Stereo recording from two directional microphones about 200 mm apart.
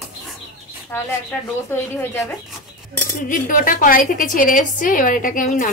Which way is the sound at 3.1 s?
40° left (ahead or behind).